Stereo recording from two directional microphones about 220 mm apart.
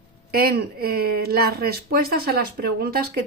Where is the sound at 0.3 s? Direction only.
45° right (ahead or behind).